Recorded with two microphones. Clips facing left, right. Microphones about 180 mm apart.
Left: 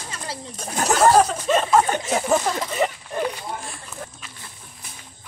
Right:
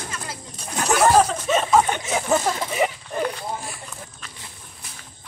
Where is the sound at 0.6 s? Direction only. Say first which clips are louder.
Left 1 dB; 40° left (ahead or behind).